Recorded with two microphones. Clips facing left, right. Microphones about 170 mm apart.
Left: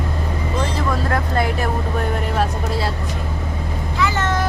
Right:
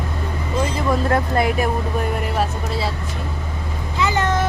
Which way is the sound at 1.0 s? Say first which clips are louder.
Right 2 dB; 25° right (ahead or behind).